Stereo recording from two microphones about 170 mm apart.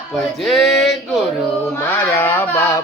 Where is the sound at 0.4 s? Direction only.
Centre (ahead or behind).